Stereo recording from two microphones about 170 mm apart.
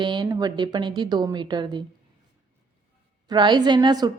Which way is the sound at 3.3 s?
25° right (ahead or behind).